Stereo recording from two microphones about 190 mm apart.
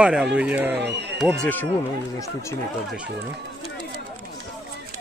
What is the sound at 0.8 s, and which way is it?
Speech, 65° right (ahead or behind).